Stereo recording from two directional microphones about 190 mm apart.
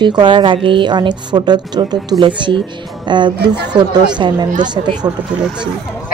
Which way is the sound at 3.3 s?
60° right (ahead or behind).